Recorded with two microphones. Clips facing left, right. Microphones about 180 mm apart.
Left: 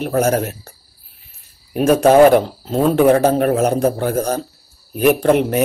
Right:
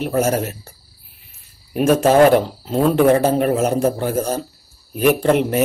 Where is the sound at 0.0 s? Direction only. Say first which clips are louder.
Left 1 dB; 55° left (ahead or behind).